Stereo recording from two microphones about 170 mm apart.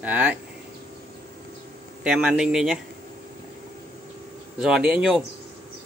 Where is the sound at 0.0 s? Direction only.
10° right (ahead or behind).